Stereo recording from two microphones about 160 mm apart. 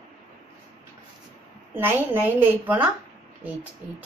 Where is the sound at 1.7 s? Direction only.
15° right (ahead or behind).